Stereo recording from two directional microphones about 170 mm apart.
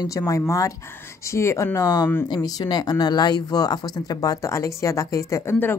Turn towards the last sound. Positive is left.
turn(degrees=15)  # may be behind; listen again after turning